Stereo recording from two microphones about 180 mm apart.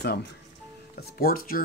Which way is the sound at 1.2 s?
55° left (ahead or behind).